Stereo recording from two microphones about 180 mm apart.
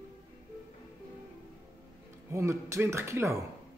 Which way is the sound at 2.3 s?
15° right (ahead or behind).